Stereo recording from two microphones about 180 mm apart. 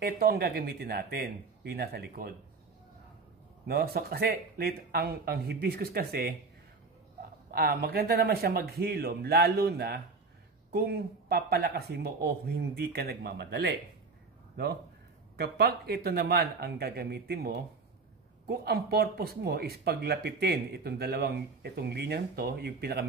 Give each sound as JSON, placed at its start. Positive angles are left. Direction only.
{"t": 0.0, "sound": "speech", "side_deg": -60}
{"t": 3.6, "sound": "speech", "side_deg": -60}
{"t": 7.5, "sound": "speech", "side_deg": -55}
{"t": 15.3, "sound": "speech", "side_deg": -60}